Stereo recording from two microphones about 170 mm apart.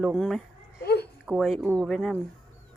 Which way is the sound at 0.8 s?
70° left (ahead or behind).